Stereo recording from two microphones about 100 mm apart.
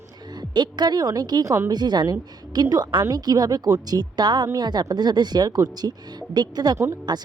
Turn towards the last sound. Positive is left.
turn(degrees=-45)  # may be behind; listen again after turning